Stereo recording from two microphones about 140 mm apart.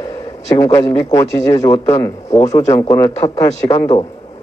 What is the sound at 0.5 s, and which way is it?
Speech, 25° left (ahead or behind).